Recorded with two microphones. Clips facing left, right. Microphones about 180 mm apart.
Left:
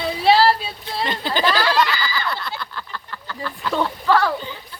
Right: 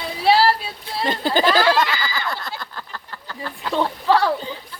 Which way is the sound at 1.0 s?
45° right (ahead or behind).